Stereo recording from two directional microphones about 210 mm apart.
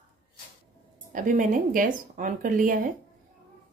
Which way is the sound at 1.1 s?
40° right (ahead or behind).